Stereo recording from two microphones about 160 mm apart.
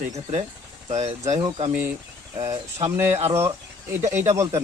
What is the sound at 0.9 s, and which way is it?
Speech, 45° right (ahead or behind).